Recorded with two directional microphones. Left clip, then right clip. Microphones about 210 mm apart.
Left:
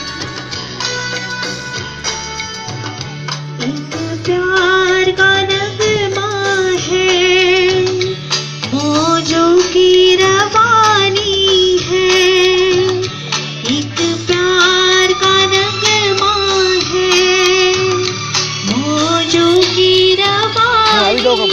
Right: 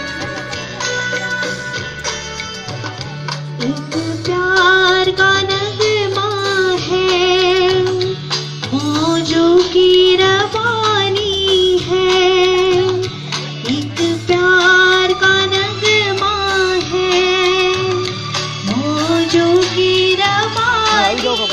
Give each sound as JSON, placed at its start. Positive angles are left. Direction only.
{"t": 0.8, "sound": "music", "side_deg": 50}
{"t": 4.6, "sound": "music", "side_deg": 30}